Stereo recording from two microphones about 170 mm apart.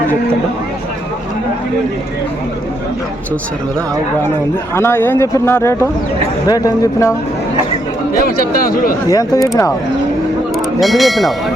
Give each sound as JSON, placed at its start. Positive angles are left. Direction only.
{"t": 4.7, "sound": "speech", "side_deg": 15}
{"t": 8.2, "sound": "speech", "side_deg": 60}
{"t": 9.0, "sound": "speech", "side_deg": 20}
{"t": 10.8, "sound": "speech", "side_deg": 0}